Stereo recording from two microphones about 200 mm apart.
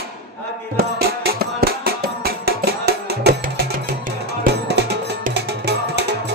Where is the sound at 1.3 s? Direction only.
50° right (ahead or behind).